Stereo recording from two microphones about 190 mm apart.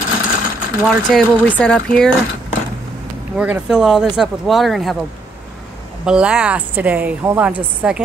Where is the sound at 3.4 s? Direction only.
5° right (ahead or behind).